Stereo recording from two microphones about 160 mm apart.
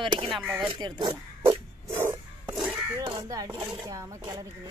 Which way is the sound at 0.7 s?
25° right (ahead or behind).